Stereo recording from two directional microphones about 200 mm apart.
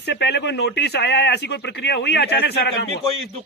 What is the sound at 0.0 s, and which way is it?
Speech, 55° left (ahead or behind).